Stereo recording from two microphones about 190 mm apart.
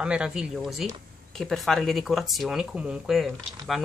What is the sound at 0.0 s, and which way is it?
Speech, 5° right (ahead or behind).